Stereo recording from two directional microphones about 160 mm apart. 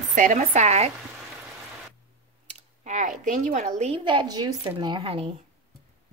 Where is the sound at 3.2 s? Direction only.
50° right (ahead or behind); by 5.2 s 35° right (ahead or behind).